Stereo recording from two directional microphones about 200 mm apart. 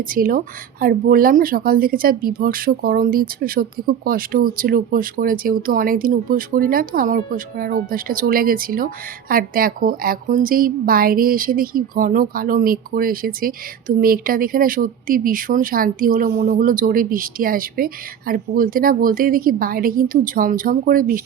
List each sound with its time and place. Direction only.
0.0 s a woman's voice: 45° right (ahead or behind)